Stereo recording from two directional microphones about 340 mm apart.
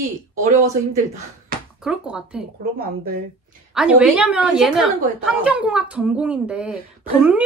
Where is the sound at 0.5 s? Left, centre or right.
Centre.